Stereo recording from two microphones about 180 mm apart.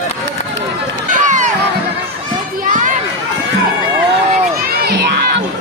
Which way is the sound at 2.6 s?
45° right (ahead or behind).